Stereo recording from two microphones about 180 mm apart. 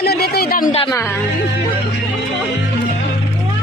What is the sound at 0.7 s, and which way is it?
Speech, 30° left (ahead or behind).